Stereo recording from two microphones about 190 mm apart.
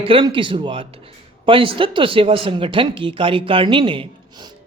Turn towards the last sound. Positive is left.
turn(degrees=-25)  # may be behind; listen again after turning